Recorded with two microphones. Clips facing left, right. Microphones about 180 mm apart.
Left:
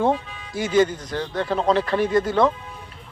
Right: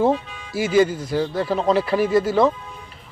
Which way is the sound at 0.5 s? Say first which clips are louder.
Right 2 dB; 5° right (ahead or behind).